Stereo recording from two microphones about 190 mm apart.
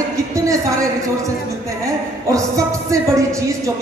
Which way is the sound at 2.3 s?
15° right (ahead or behind).